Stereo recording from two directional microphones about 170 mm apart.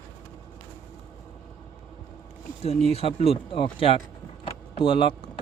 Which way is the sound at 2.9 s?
35° left (ahead or behind).